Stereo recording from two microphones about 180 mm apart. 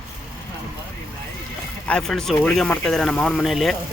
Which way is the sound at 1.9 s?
5° left (ahead or behind).